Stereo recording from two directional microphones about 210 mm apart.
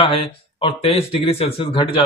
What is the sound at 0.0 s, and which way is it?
Speech, 25° left (ahead or behind).